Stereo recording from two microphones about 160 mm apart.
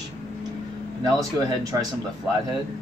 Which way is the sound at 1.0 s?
25° right (ahead or behind).